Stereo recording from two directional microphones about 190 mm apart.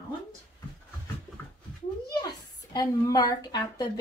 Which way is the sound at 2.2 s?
20° left (ahead or behind).